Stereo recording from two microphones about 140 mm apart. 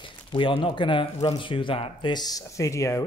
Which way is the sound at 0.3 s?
35° left (ahead or behind).